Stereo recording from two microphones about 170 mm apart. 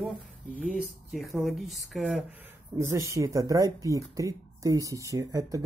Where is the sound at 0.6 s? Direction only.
5° right (ahead or behind).